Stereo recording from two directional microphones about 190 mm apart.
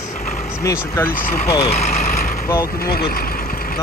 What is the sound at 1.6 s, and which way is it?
Speech, 35° left (ahead or behind).